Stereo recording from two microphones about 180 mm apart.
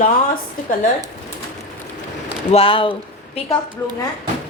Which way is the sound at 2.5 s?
30° left (ahead or behind).